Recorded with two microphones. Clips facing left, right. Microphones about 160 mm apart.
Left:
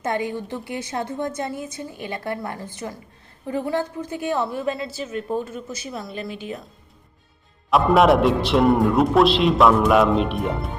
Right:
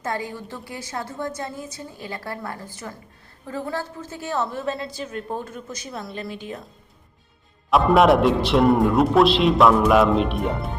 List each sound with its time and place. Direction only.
0.0 s a woman's voice: 20° left (ahead or behind); by 6.6 s 5° left (ahead or behind)
7.7 s a man's voice: centre (ahead or behind)